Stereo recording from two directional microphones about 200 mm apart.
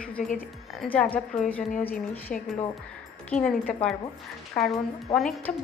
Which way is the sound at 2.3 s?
40° left (ahead or behind).